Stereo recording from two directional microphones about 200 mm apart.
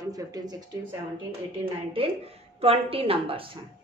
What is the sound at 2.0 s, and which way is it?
Speech, 25° right (ahead or behind).